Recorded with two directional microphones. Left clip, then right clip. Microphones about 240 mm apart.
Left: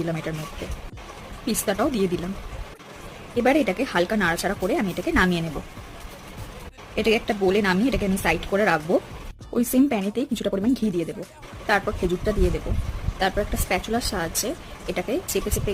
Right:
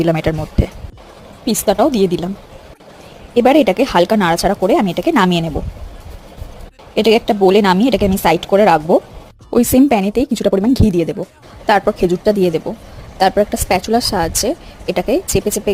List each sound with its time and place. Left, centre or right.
0.0 s a woman's voice: right
1.5 s speech: right
3.3 s speech: right
6.9 s a woman's voice: right